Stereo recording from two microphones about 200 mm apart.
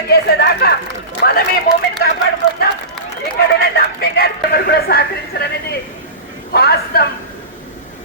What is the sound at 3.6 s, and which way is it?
Speech, 50° left (ahead or behind).